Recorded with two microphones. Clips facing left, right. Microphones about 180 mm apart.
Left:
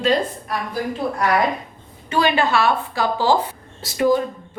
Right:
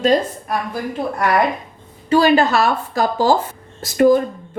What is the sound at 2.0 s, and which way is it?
A woman's voice, 35° right (ahead or behind).